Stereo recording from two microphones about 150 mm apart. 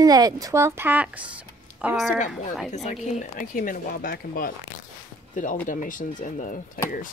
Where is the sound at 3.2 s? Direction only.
65° left (ahead or behind).